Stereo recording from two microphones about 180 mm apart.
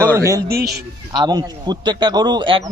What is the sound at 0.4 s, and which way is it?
Speech, 60° right (ahead or behind).